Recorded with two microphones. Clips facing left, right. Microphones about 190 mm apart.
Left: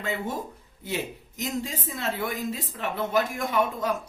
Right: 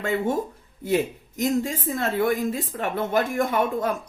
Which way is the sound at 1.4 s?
50° right (ahead or behind).